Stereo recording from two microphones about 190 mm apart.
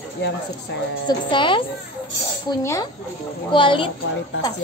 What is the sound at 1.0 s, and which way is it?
Speech, 25° left (ahead or behind).